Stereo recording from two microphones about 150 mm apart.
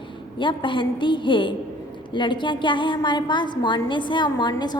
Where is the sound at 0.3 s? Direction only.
30° left (ahead or behind).